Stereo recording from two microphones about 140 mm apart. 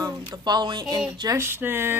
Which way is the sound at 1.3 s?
15° right (ahead or behind).